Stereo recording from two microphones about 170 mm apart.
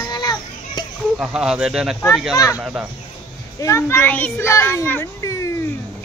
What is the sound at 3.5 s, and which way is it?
A child's voice, 15° left (ahead or behind).